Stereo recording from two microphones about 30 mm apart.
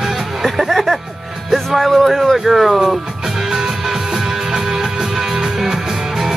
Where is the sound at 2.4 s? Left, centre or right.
Centre.